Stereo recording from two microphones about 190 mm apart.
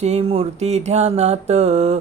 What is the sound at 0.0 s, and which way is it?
Speech, 30° right (ahead or behind).